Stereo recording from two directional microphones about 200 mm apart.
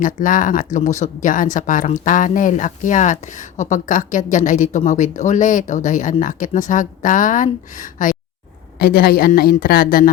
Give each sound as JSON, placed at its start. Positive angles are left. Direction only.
{"t": 0.0, "sound": "a woman's voice", "side_deg": 40}